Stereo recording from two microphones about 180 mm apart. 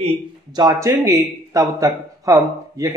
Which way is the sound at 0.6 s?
20° right (ahead or behind).